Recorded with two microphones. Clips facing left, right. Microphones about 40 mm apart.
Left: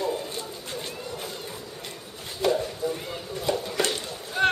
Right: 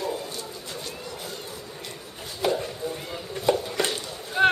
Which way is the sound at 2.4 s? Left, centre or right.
Centre.